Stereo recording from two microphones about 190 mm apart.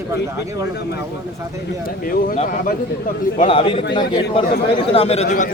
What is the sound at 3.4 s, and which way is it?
Speech, 30° left (ahead or behind).